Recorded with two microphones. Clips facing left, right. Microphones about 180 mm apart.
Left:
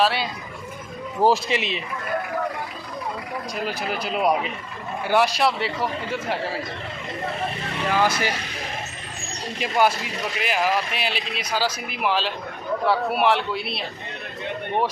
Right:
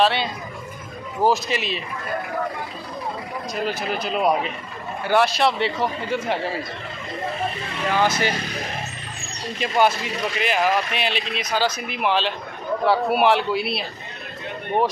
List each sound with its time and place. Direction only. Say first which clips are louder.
0.0 s speech: right 2 dB; 5° left (ahead or behind)
1.2 s speech: left 1 dB; 25° left (ahead or behind)
3.6 s speech: right 3 dB; 10° left (ahead or behind)
7.9 s speech: right 1 dB; 5° left (ahead or behind)
9.6 s speech: right 1 dB; 10° left (ahead or behind)